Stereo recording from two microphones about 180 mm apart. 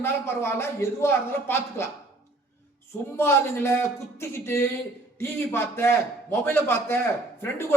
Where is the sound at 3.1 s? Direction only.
15° left (ahead or behind).